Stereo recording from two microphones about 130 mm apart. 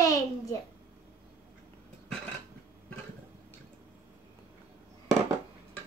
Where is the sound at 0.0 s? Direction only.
25° left (ahead or behind).